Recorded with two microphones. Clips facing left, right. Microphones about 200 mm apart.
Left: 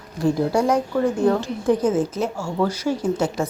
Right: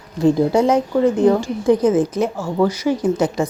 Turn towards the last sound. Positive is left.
turn(degrees=-15)  # may be behind; listen again after turning